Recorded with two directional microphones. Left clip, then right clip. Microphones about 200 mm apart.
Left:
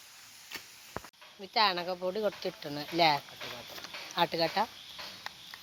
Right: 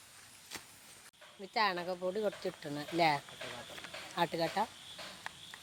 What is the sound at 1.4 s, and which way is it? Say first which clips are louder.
Speech: left 5 dB; 5° left (ahead or behind).